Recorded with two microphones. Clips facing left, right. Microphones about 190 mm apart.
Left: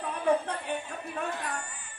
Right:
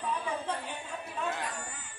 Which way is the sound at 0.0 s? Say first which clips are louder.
Left 7 dB; 60° left (ahead or behind).